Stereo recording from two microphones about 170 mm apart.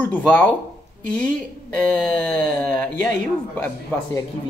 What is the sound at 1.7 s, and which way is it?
Speech, 5° left (ahead or behind).